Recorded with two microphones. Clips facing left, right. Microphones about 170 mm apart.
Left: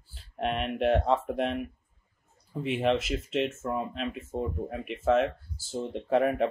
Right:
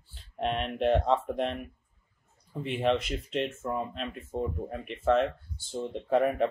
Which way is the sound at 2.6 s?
Centre (ahead or behind).